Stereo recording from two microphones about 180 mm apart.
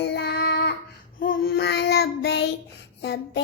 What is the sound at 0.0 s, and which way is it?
Child singing, 65° left (ahead or behind).